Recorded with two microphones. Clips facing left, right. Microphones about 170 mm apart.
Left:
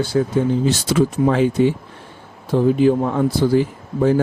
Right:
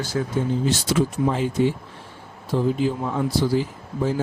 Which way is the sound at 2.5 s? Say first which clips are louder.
Left 7 dB; 60° left (ahead or behind).